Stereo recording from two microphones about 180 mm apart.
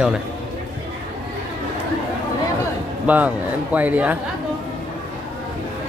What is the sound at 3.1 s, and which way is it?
Speech, 10° right (ahead or behind).